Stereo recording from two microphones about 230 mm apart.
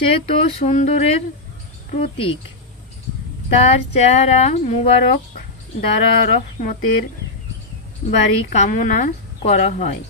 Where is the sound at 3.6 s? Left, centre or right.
Left.